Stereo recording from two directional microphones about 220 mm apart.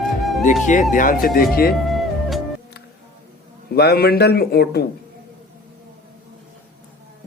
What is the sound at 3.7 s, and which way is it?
Speech, 45° left (ahead or behind).